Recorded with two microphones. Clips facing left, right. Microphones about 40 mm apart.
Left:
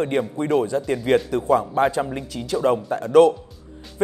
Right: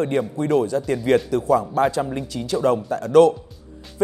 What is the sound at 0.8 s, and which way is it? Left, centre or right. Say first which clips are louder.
A man's voice: right 1 dB; left.